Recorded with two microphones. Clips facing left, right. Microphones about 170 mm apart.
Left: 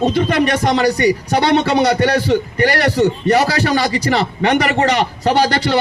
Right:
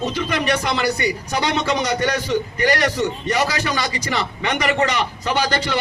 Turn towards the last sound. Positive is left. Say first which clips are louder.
# left 6 dB
turn(degrees=35)  # may be behind; listen again after turning